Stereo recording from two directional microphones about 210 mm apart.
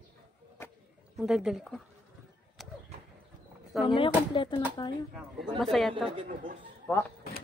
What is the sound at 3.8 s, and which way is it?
Speech, 25° left (ahead or behind).